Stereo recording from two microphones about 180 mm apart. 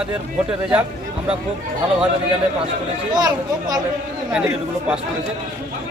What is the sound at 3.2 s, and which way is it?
Speech, 20° right (ahead or behind).